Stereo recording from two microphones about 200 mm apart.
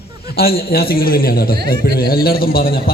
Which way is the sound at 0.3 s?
50° left (ahead or behind).